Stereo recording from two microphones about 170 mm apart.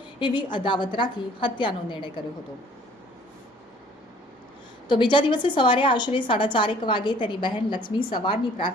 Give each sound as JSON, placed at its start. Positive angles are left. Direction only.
{"t": 0.2, "sound": "a woman's voice", "side_deg": 25}
{"t": 4.9, "sound": "a woman's voice", "side_deg": 30}